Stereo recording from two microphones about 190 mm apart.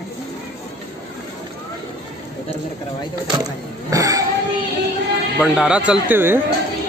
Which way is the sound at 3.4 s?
20° right (ahead or behind).